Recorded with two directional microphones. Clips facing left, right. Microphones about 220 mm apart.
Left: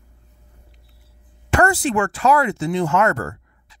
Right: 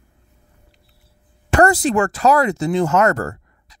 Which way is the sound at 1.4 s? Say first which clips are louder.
Right 3 dB; 40° right (ahead or behind).